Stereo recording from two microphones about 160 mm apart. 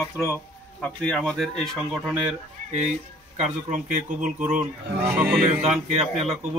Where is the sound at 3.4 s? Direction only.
50° right (ahead or behind).